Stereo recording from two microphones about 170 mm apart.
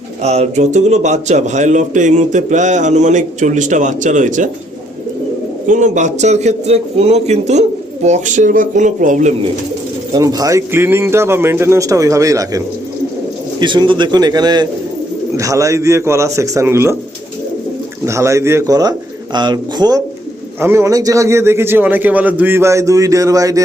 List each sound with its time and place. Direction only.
0.2 s a man's voice: 40° right (ahead or behind)
5.6 s a man's voice: 45° right (ahead or behind)
10.1 s a man's voice: 20° right (ahead or behind)
18.0 s a man's voice: 15° right (ahead or behind)